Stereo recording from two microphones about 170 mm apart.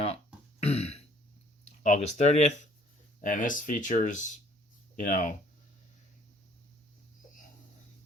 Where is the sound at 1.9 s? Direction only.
40° left (ahead or behind).